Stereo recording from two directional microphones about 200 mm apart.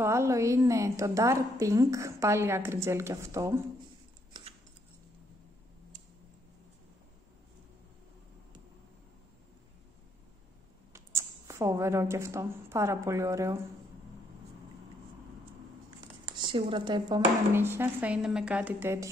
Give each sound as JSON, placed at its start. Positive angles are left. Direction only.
{"t": 0.0, "sound": "a woman's voice", "side_deg": -15}
{"t": 10.9, "sound": "a woman's voice", "side_deg": -15}
{"t": 16.3, "sound": "speech", "side_deg": -25}
{"t": 17.5, "sound": "a woman's voice", "side_deg": -10}